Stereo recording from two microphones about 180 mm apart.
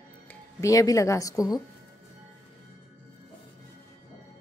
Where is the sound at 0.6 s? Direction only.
20° left (ahead or behind).